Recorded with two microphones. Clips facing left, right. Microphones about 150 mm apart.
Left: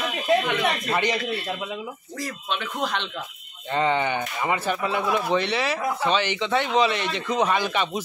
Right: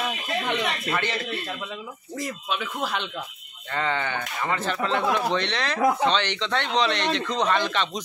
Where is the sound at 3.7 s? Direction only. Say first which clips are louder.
Left 4 dB; 15° left (ahead or behind).